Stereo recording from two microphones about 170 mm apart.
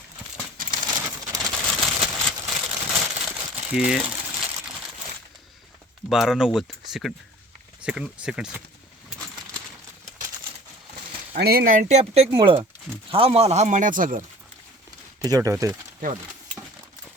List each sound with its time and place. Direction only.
0.6 s a sound: 25° right (ahead or behind)
1.4 s a sound: 5° right (ahead or behind)
2.8 s crumpling: 5° right (ahead or behind)
6.1 s speech: centre (ahead or behind)
11.3 s speech: 65° right (ahead or behind)
15.2 s speech: 20° right (ahead or behind)